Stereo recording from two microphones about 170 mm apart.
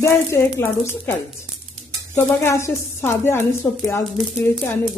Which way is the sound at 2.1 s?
15° left (ahead or behind).